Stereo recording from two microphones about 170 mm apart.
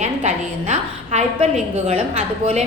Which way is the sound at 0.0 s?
45° right (ahead or behind).